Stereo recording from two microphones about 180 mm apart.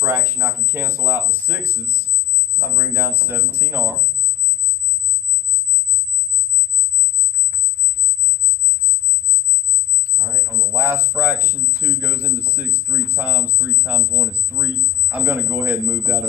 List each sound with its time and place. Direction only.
0.0 s a man's voice: 15° right (ahead or behind)
10.2 s a man's voice: 15° right (ahead or behind)